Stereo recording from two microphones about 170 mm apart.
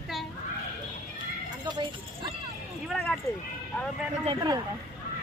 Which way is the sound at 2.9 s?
5° left (ahead or behind).